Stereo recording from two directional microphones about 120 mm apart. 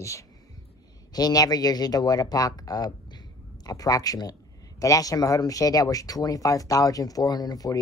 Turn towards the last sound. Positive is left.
turn(degrees=30)  # may be behind; listen again after turning